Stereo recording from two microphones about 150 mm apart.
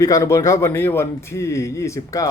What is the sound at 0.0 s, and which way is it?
Speech, 20° left (ahead or behind).